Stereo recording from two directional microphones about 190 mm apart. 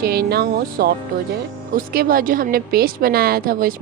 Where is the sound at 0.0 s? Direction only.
55° right (ahead or behind).